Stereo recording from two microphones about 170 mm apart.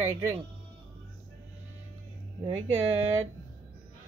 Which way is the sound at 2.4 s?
35° right (ahead or behind).